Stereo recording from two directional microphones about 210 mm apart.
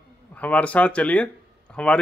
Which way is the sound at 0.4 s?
5° left (ahead or behind).